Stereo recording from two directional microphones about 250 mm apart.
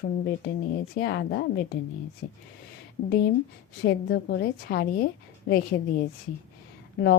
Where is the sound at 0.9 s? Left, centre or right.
Left.